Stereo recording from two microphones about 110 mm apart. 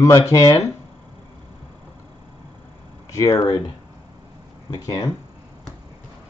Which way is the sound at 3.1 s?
30° left (ahead or behind).